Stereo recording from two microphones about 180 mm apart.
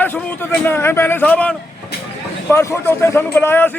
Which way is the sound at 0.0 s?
10° left (ahead or behind).